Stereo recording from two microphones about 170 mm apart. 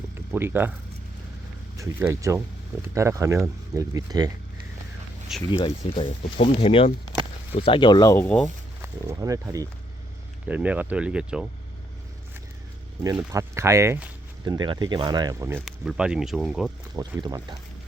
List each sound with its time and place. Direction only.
0.3 s speech: 10° right (ahead or behind)
1.8 s speech: 15° right (ahead or behind)
5.3 s speech: centre (ahead or behind)
5.6 s speech: 40° left (ahead or behind); by 8.3 s 20° left (ahead or behind)
8.8 s speech: 15° right (ahead or behind)
10.4 s speech: 10° right (ahead or behind)
13.3 s speech: 15° right (ahead or behind)
14.4 s speech: 25° right (ahead or behind)
15.6 s speech: 5° right (ahead or behind)
17.2 s speech: 20° right (ahead or behind)